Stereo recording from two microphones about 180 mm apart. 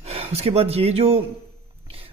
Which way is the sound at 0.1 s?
35° right (ahead or behind).